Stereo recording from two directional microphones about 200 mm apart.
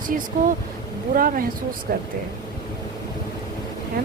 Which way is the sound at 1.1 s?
45° right (ahead or behind).